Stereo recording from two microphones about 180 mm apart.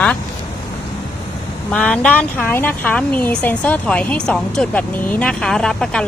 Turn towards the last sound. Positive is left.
turn(degrees=5)  # may be behind; listen again after turning